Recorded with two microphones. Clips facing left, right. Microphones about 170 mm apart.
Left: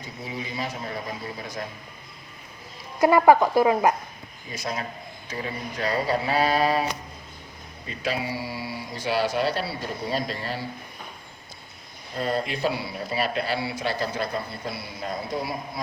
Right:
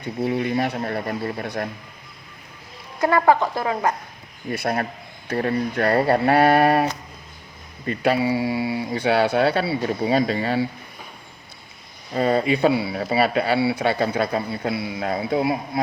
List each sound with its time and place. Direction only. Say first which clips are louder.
0.0 s speech: right 12 dB; 60° right (ahead or behind)
3.0 s speech: left 1 dB; 15° left (ahead or behind)
4.4 s speech: right 8 dB; 60° right (ahead or behind)
7.9 s speech: right 9 dB; 60° right (ahead or behind)
12.1 s speech: right 8 dB; 65° right (ahead or behind)